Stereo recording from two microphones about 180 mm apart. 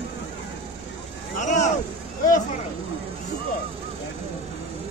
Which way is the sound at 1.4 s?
45° left (ahead or behind).